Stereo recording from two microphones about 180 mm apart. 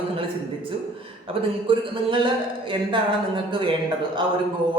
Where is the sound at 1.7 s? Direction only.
30° right (ahead or behind).